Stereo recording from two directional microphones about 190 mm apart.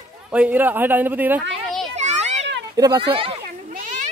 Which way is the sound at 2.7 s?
25° right (ahead or behind).